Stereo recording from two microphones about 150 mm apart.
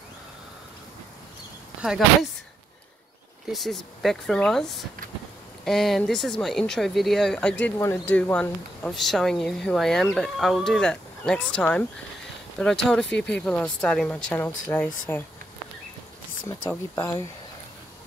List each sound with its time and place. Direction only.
1.8 s speech: 5° right (ahead or behind)
3.5 s a woman's voice: centre (ahead or behind)
16.9 s a woman's voice: 20° left (ahead or behind)